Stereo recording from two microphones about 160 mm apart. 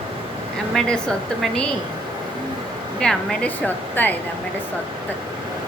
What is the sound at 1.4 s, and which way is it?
Speech, 5° left (ahead or behind).